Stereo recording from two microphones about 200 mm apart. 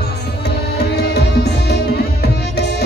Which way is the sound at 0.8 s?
55° left (ahead or behind).